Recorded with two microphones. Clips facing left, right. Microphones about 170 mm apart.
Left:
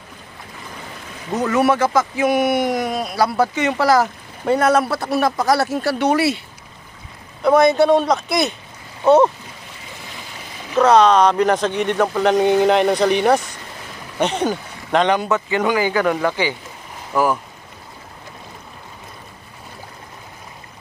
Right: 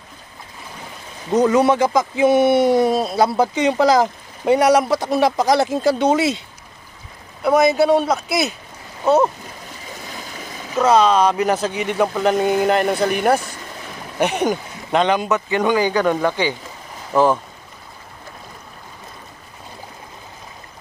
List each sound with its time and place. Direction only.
1.3 s speech: 20° right (ahead or behind)
7.4 s speech: 5° right (ahead or behind)
10.8 s speech: 5° right (ahead or behind)
15.7 s speech: 10° left (ahead or behind)
17.1 s speech: 20° right (ahead or behind)